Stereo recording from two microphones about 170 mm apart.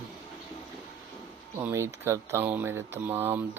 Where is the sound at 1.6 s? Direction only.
15° right (ahead or behind).